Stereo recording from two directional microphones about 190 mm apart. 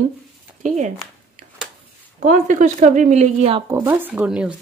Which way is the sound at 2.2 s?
45° right (ahead or behind).